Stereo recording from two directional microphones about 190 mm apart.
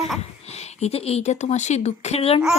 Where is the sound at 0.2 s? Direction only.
35° left (ahead or behind).